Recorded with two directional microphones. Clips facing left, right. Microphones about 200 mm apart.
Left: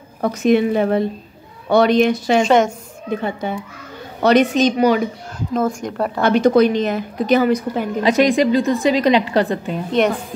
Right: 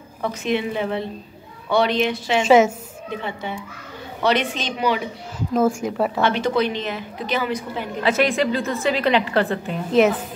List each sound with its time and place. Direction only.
0.2 s a woman's voice: 40° left (ahead or behind)
2.4 s speech: 5° right (ahead or behind)
3.1 s a woman's voice: 45° left (ahead or behind)
5.5 s speech: 5° right (ahead or behind)
6.2 s a woman's voice: 45° left (ahead or behind)
8.0 s a woman's voice: 15° left (ahead or behind)
9.8 s speech: 5° right (ahead or behind)